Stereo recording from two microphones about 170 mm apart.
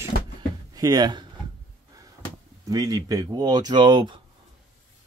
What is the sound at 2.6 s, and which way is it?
Speech, 20° right (ahead or behind).